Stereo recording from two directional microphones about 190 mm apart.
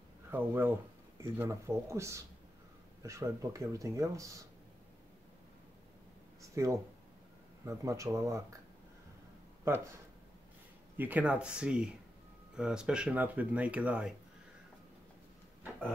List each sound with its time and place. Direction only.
0.3 s speech: 10° right (ahead or behind)
6.5 s speech: 15° right (ahead or behind)
11.0 s speech: 10° right (ahead or behind)